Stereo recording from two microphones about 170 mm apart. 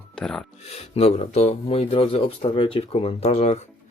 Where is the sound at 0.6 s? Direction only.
40° left (ahead or behind).